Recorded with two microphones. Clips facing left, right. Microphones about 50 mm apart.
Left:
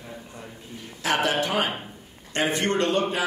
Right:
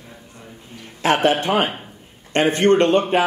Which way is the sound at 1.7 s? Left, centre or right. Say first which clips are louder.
Even; centre.